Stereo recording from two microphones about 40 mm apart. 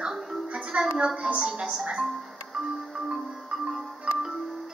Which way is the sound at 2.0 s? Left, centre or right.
Centre.